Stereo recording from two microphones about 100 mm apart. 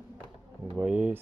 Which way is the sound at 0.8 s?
15° right (ahead or behind).